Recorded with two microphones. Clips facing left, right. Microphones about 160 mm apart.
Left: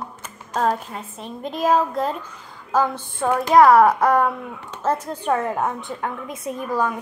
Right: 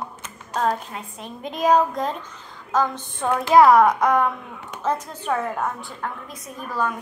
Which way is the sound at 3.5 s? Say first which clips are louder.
Left 1 dB; centre (ahead or behind).